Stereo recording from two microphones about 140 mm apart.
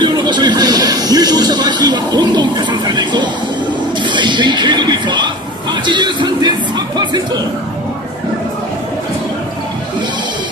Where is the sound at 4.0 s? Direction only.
35° right (ahead or behind).